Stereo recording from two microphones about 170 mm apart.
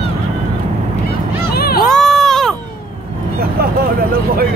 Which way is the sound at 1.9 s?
Centre (ahead or behind).